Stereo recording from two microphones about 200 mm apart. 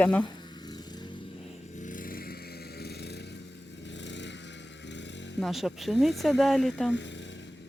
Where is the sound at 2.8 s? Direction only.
55° left (ahead or behind).